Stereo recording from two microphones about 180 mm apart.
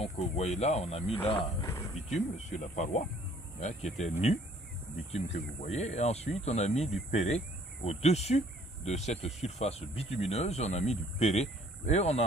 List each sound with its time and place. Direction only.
0.0 s speech: 35° left (ahead or behind)
1.6 s a sound: 20° left (ahead or behind)
2.1 s speech: 40° left (ahead or behind)